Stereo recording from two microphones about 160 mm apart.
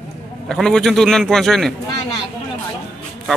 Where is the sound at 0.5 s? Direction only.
5° left (ahead or behind).